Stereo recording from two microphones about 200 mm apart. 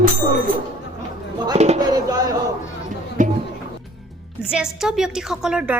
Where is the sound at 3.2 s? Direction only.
40° right (ahead or behind).